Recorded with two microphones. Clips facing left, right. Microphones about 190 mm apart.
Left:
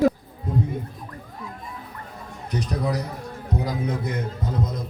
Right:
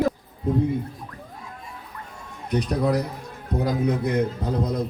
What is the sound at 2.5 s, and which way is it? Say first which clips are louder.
Speech: right 4 dB; 60° right (ahead or behind).